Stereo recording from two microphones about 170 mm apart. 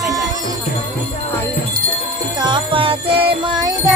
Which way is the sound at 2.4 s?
30° right (ahead or behind).